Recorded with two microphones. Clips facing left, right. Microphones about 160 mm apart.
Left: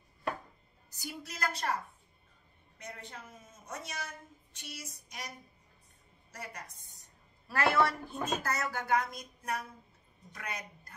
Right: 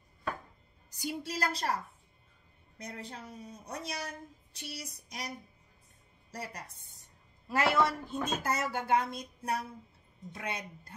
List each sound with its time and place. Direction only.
1.0 s speech: 30° right (ahead or behind)
2.8 s speech: 35° right (ahead or behind)
6.3 s speech: 35° right (ahead or behind)
7.4 s speech: 20° right (ahead or behind)